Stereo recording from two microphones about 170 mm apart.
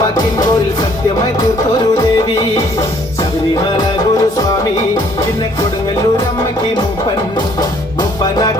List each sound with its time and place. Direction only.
3.8 s music: 25° left (ahead or behind)